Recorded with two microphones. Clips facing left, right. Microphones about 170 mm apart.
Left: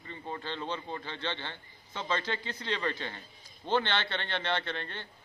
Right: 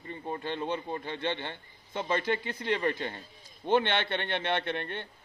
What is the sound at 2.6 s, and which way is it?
A man's voice, 15° right (ahead or behind).